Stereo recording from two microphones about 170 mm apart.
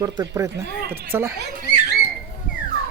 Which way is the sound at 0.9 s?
65° right (ahead or behind).